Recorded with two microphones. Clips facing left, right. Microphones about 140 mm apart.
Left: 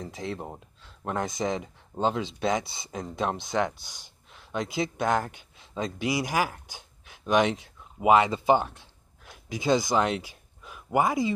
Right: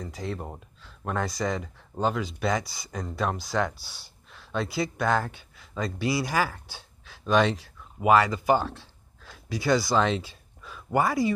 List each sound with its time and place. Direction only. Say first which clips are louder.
0.0 s speech: even; 20° left (ahead or behind)